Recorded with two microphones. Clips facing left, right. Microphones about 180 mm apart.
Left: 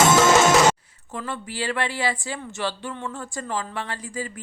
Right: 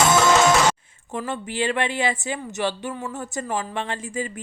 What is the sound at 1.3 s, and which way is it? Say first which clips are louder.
Speech: right 4 dB; 20° right (ahead or behind).